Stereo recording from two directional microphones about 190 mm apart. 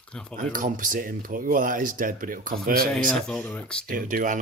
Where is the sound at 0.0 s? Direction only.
5° left (ahead or behind).